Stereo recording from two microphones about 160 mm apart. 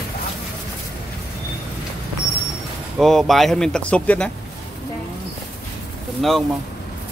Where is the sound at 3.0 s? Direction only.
Centre (ahead or behind).